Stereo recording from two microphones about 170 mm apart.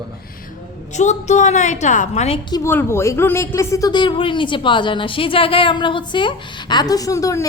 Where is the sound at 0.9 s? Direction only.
45° left (ahead or behind).